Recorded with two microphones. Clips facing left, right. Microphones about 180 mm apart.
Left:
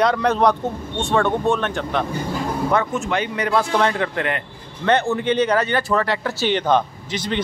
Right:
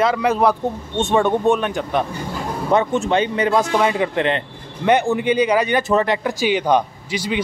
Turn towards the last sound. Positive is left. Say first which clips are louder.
# right 1 dB
turn(degrees=-10)  # may be behind; listen again after turning